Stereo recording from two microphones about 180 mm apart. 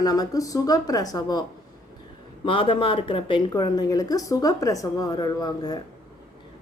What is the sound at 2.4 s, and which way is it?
Speech, 30° left (ahead or behind).